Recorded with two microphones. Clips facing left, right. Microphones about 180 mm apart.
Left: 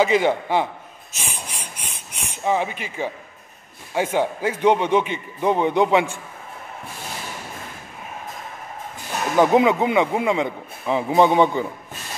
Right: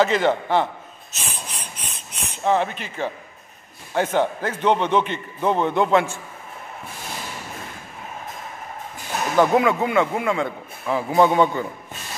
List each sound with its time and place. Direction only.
0.0 s a man's voice: 10° left (ahead or behind)
1.1 s a sound: 10° left (ahead or behind)
3.9 s a man's voice: 10° left (ahead or behind)
9.4 s a man's voice: 20° left (ahead or behind)